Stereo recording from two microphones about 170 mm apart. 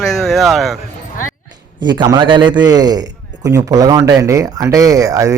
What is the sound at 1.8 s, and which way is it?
Speech, 25° right (ahead or behind).